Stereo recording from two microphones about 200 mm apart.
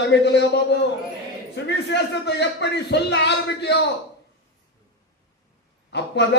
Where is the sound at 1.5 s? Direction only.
60° left (ahead or behind).